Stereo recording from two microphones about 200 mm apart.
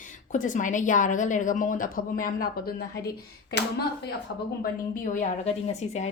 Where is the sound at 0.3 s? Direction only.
40° left (ahead or behind).